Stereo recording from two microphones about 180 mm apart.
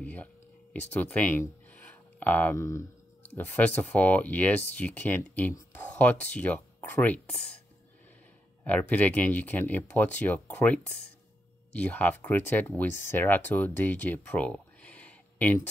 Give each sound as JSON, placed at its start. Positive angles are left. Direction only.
{"t": 0.0, "sound": "a sound", "side_deg": 10}
{"t": 0.7, "sound": "speech", "side_deg": 10}
{"t": 8.6, "sound": "speech", "side_deg": 10}